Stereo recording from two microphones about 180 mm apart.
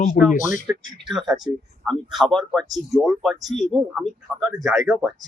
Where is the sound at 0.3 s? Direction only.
45° left (ahead or behind).